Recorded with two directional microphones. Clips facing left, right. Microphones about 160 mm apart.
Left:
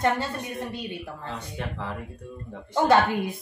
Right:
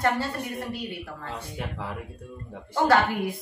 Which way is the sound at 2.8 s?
20° left (ahead or behind).